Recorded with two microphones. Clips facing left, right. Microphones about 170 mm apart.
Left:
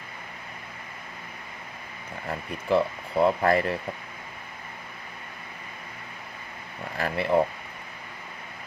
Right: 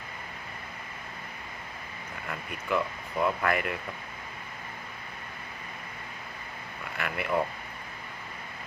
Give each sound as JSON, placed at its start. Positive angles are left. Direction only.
{"t": 2.2, "sound": "speech", "side_deg": 30}
{"t": 6.9, "sound": "speech", "side_deg": 30}